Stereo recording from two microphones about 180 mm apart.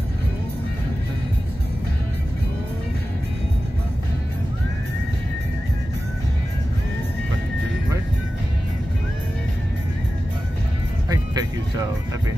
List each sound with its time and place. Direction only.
11.1 s music: 20° right (ahead or behind)